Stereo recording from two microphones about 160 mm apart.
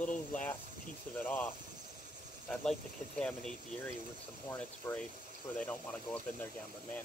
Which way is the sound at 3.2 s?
5° left (ahead or behind).